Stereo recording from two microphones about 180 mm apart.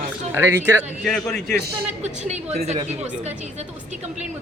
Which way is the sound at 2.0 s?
40° right (ahead or behind).